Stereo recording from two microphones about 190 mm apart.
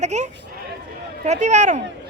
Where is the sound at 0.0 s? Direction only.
35° right (ahead or behind).